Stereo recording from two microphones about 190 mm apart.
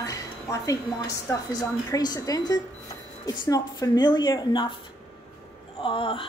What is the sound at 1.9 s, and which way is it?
Speech, 20° left (ahead or behind).